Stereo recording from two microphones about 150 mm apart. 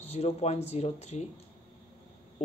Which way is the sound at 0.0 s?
45° left (ahead or behind).